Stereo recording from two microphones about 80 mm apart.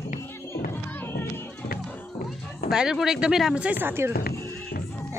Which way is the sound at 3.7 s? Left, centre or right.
Right.